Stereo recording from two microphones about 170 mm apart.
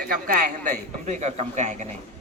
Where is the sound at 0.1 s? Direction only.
50° right (ahead or behind).